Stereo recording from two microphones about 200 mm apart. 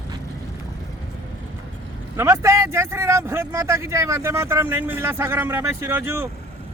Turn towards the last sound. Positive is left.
turn(degrees=-10)  # may be behind; listen again after turning